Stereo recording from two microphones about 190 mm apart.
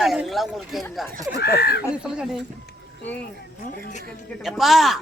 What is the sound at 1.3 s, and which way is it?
Speech, 60° left (ahead or behind).